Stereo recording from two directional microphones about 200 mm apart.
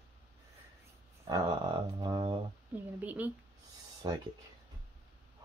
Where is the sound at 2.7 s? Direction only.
10° right (ahead or behind).